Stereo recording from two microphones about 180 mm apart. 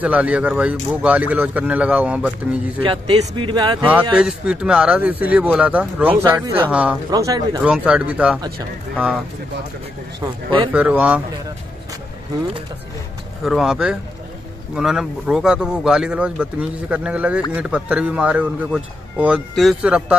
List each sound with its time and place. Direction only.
0.0 s speech: 5° right (ahead or behind)
2.8 s speech: 30° right (ahead or behind)
3.8 s speech: 5° right (ahead or behind)
7.1 s speech: 20° right (ahead or behind)
7.6 s speech: 5° right (ahead or behind)
10.2 s speech: 20° right (ahead or behind)
10.7 s speech: 5° right (ahead or behind)
13.4 s speech: centre (ahead or behind)